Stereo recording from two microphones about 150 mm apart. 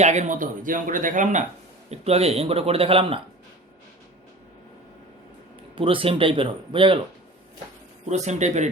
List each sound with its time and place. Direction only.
0.0 s speech: 50° right (ahead or behind)
1.9 s speech: 45° right (ahead or behind)
5.7 s speech: 35° right (ahead or behind)
8.0 s a man's voice: 50° right (ahead or behind)